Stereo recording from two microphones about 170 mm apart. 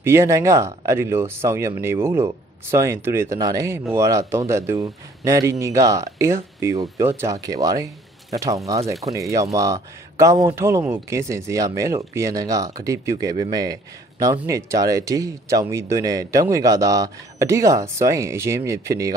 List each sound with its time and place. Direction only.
0.0 s speech: 15° right (ahead or behind)